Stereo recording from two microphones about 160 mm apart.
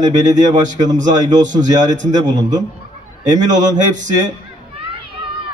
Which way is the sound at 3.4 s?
50° right (ahead or behind).